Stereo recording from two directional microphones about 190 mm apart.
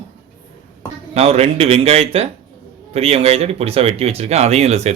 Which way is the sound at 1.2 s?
35° right (ahead or behind).